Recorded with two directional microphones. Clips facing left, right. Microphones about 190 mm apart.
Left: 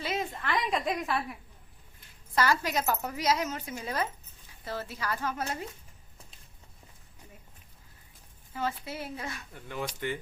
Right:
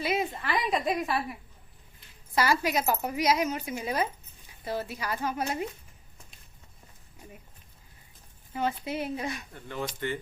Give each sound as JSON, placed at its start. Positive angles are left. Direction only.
{"t": 0.0, "sound": "a woman's voice", "side_deg": -10}
{"t": 8.5, "sound": "speech", "side_deg": -20}
{"t": 9.6, "sound": "speech", "side_deg": 10}